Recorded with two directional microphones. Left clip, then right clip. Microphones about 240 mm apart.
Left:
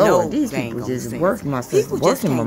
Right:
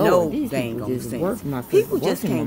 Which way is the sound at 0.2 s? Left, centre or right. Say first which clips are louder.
Left 3 dB; centre.